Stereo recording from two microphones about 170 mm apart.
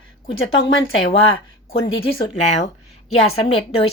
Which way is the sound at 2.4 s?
40° left (ahead or behind).